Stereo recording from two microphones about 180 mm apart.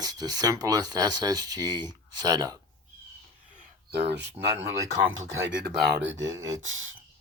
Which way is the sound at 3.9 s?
65° right (ahead or behind).